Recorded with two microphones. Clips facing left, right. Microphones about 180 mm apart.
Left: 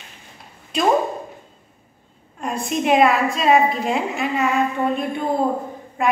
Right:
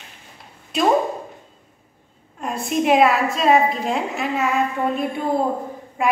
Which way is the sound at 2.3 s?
Centre (ahead or behind).